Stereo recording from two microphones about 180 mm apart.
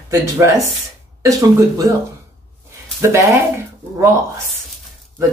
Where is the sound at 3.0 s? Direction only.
15° right (ahead or behind).